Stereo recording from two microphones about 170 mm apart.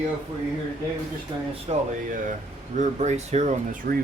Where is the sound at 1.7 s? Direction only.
35° right (ahead or behind).